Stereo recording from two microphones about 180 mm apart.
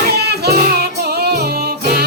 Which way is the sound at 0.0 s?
65° right (ahead or behind).